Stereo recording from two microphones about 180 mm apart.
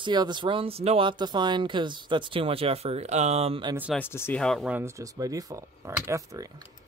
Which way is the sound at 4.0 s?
15° left (ahead or behind).